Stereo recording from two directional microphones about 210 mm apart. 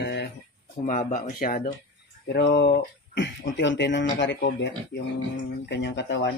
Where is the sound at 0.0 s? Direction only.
55° left (ahead or behind).